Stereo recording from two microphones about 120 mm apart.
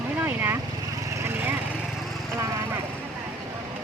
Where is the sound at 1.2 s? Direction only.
15° right (ahead or behind).